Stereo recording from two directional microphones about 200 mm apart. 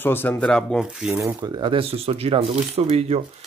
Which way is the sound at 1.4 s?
25° right (ahead or behind).